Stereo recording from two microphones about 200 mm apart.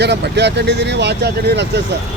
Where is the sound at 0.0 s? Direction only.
55° right (ahead or behind).